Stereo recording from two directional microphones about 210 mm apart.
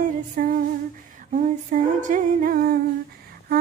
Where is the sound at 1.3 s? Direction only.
40° right (ahead or behind).